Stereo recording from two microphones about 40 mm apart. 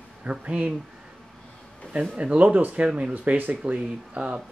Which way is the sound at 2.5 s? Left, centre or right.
Right.